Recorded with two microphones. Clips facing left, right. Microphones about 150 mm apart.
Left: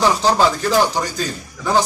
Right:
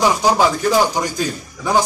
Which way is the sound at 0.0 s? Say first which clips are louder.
Even; 10° right (ahead or behind).